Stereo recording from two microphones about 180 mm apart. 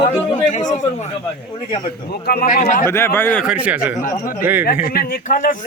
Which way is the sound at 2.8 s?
15° left (ahead or behind).